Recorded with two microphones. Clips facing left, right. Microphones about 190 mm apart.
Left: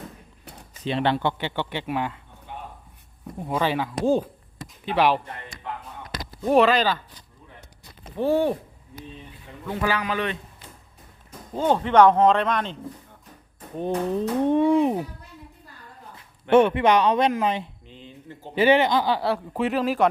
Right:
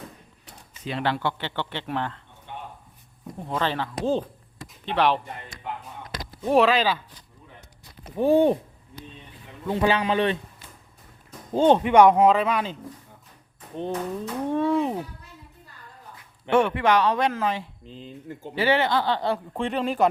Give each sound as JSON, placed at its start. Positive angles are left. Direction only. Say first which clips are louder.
{"t": 0.9, "sound": "speech", "louder": "left 3 dB", "side_deg": 25}
{"t": 3.4, "sound": "speech", "louder": "left 3 dB", "side_deg": 10}
{"t": 6.4, "sound": "speech", "louder": "left 1 dB", "side_deg": 0}
{"t": 8.1, "sound": "speech", "louder": "right 3 dB", "side_deg": -15}
{"t": 9.6, "sound": "a man's voice", "louder": "right 3 dB", "side_deg": -25}
{"t": 11.5, "sound": "a man's voice", "louder": "right 4 dB", "side_deg": -25}
{"t": 11.8, "sound": "speech", "louder": "left 4 dB", "side_deg": -10}
{"t": 14.2, "sound": "speech", "louder": "left 6 dB", "side_deg": 20}
{"t": 16.5, "sound": "speech", "louder": "left 3 dB", "side_deg": 20}
{"t": 17.8, "sound": "speech", "louder": "right 4 dB", "side_deg": -35}
{"t": 18.5, "sound": "speech", "louder": "left 4 dB", "side_deg": 20}